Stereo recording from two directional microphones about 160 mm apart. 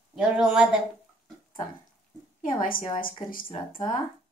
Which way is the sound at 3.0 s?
60° left (ahead or behind).